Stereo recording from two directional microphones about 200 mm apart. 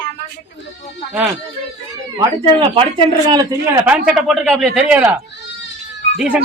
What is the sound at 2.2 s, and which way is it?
Speech, 25° right (ahead or behind).